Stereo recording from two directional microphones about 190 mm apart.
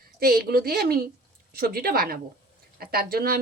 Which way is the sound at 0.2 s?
50° right (ahead or behind).